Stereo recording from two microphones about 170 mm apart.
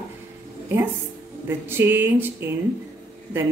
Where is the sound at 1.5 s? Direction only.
15° right (ahead or behind).